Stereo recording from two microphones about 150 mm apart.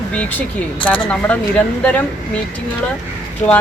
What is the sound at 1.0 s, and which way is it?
Speech, 10° left (ahead or behind).